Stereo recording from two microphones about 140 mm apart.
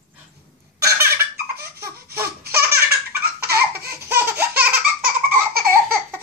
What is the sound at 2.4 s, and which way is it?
Laughter, 90° right.